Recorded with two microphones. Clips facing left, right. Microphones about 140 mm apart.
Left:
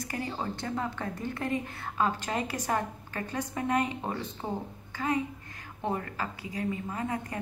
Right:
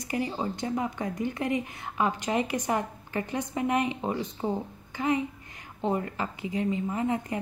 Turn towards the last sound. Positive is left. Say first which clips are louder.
# right 5 dB
turn(degrees=-20)  # may be behind; listen again after turning